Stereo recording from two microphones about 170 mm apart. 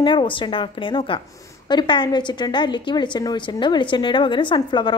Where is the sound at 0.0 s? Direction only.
30° left (ahead or behind).